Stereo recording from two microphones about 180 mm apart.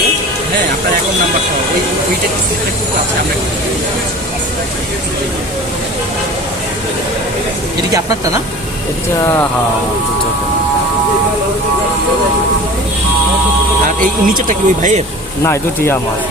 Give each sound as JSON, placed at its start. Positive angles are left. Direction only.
{"t": 7.9, "sound": "speech", "side_deg": -20}
{"t": 14.0, "sound": "speech", "side_deg": -50}
{"t": 15.4, "sound": "speech", "side_deg": 15}